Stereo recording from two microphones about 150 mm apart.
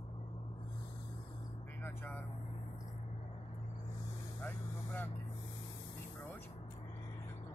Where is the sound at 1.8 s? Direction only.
15° left (ahead or behind).